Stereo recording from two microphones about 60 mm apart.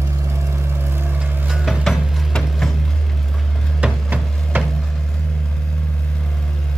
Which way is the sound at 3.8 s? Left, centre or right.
Right.